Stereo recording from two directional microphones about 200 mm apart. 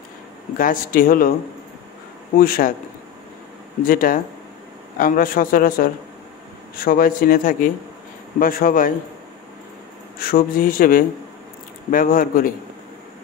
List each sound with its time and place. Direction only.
0.6 s speech: 45° left (ahead or behind)
2.3 s speech: 45° left (ahead or behind)
3.8 s speech: 45° left (ahead or behind)
10.1 s speech: 45° left (ahead or behind)